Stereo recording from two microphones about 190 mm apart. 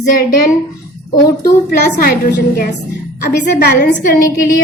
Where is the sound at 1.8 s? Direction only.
50° left (ahead or behind).